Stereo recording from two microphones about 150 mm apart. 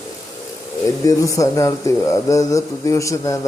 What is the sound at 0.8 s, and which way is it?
Speech, 20° left (ahead or behind).